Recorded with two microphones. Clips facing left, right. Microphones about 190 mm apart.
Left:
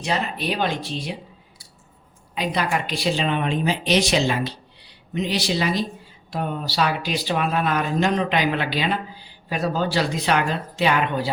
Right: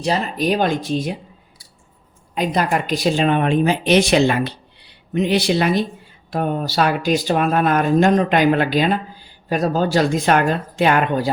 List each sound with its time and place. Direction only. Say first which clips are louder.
0.0 s speech: right 5 dB; 40° right (ahead or behind)
2.3 s speech: right 5 dB; 45° right (ahead or behind)